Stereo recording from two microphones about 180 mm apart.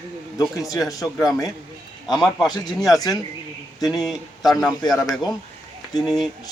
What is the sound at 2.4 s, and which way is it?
Speech, centre (ahead or behind).